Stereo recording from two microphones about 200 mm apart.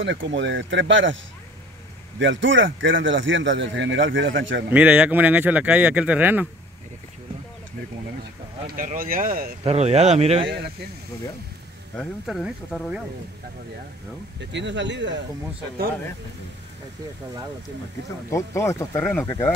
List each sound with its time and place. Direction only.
0.0 s a man's voice: 65° right (ahead or behind)
2.1 s a man's voice: 70° right (ahead or behind)
4.6 s speech: 5° right (ahead or behind)
8.6 s speech: 45° right (ahead or behind)
9.6 s speech: 30° right (ahead or behind)
12.0 s speech: centre (ahead or behind)
14.4 s speech: 60° right (ahead or behind)
18.3 s speech: 15° left (ahead or behind)